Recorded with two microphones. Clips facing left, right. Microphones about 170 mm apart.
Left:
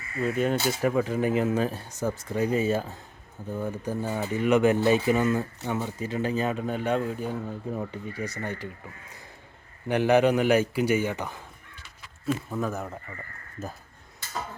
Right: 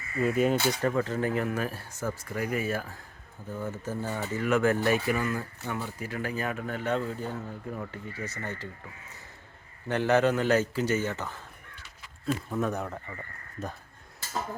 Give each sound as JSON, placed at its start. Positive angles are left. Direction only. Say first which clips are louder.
{"t": 0.2, "sound": "speech", "louder": "right 1 dB", "side_deg": -5}
{"t": 0.8, "sound": "a man's voice", "louder": "left 3 dB", "side_deg": 10}
{"t": 12.2, "sound": "speech", "louder": "left 1 dB", "side_deg": 0}